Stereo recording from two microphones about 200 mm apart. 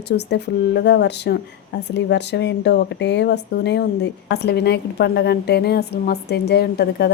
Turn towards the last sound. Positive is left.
turn(degrees=55)  # may be behind; listen again after turning